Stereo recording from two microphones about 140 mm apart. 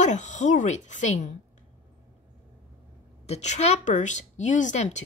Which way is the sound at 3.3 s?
55° left (ahead or behind).